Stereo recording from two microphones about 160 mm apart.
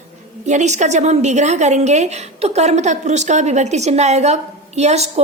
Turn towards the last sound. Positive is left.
turn(degrees=-45)  # may be behind; listen again after turning